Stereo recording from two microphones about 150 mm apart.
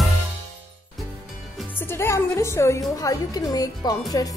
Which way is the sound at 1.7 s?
15° left (ahead or behind).